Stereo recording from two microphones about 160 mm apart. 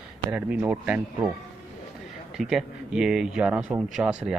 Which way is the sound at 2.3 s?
5° right (ahead or behind).